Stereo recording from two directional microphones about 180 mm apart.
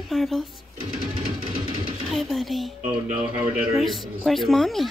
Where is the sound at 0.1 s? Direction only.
Centre (ahead or behind).